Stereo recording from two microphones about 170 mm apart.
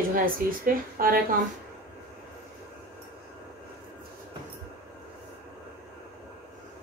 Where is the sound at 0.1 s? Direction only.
55° right (ahead or behind).